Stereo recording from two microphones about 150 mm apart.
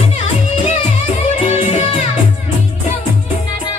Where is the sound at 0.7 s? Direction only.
45° left (ahead or behind).